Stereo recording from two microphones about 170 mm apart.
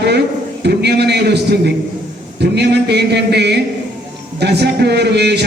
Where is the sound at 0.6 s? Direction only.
75° right (ahead or behind).